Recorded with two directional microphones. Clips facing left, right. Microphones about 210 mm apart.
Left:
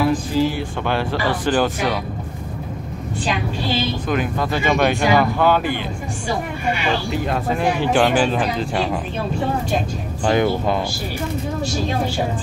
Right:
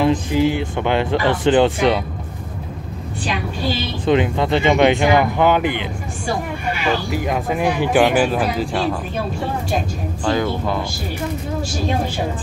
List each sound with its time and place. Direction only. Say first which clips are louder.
0.0 s speech: right 2 dB; 20° right (ahead or behind)
4.0 s speech: right 5 dB; 25° right (ahead or behind)
7.1 s speech: right 1 dB; 10° right (ahead or behind)
10.2 s speech: left 2 dB; 20° left (ahead or behind)